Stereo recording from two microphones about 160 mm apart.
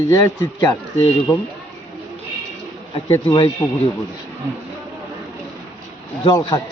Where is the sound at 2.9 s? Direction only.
35° left (ahead or behind).